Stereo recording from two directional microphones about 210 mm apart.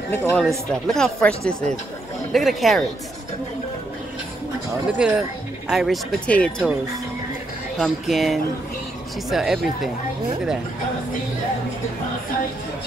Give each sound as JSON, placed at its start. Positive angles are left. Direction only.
{"t": 0.1, "sound": "speech", "side_deg": 10}
{"t": 5.0, "sound": "speech", "side_deg": -5}
{"t": 7.7, "sound": "speech", "side_deg": 0}